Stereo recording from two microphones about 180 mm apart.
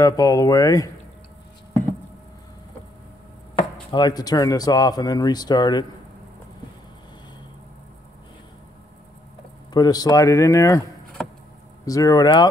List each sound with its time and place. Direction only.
0.0 s speech: 20° left (ahead or behind)
3.9 s speech: 25° left (ahead or behind)
9.7 s speech: 20° left (ahead or behind)
11.2 s a sound: 5° left (ahead or behind)
11.8 s speech: 20° left (ahead or behind)